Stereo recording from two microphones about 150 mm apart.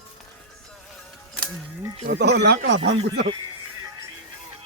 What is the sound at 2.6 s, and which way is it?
Speech, 40° right (ahead or behind).